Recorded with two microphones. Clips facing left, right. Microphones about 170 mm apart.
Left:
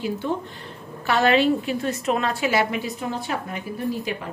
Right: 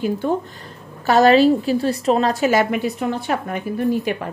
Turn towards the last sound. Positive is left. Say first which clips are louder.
# right 7 dB
turn(degrees=-60)  # may be behind; listen again after turning